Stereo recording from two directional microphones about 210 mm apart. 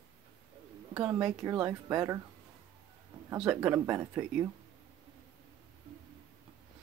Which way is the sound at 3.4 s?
5° right (ahead or behind).